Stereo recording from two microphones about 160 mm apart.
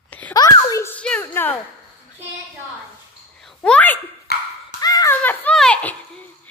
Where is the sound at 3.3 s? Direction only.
5° left (ahead or behind).